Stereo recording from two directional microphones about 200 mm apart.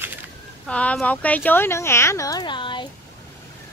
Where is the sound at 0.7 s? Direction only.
5° left (ahead or behind); by 2.9 s 25° left (ahead or behind).